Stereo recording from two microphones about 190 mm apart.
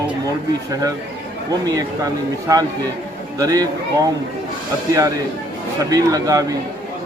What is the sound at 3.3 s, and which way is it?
Speech, 20° right (ahead or behind).